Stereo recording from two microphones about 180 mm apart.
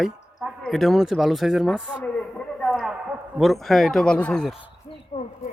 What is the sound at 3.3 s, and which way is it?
Speech, centre (ahead or behind).